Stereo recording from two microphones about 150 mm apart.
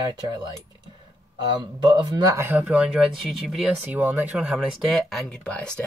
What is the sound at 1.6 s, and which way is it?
Speech, 30° right (ahead or behind).